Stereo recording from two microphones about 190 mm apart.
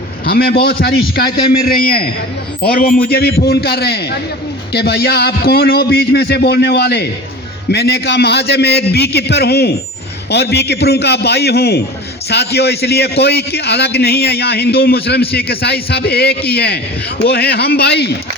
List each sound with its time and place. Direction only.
0.3 s a man's voice: 55° left (ahead or behind)